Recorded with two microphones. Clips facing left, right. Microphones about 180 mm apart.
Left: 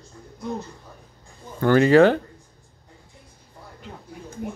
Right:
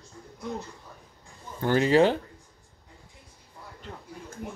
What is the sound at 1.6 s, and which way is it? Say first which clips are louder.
Speech: left 6 dB; 65° left (ahead or behind).